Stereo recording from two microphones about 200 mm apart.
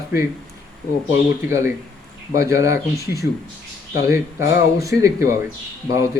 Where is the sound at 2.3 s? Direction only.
15° right (ahead or behind).